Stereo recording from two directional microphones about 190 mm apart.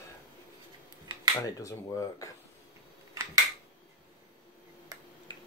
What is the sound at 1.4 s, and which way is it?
Speech, 15° left (ahead or behind).